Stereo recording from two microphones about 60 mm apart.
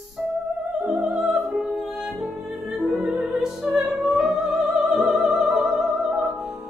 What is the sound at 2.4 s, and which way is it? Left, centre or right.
Music, centre.